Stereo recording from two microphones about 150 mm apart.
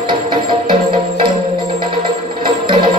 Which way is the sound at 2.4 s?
30° right (ahead or behind).